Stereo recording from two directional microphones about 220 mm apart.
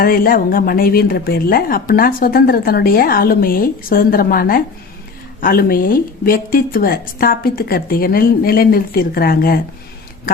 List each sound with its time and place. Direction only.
0.0 s speech: 40° left (ahead or behind)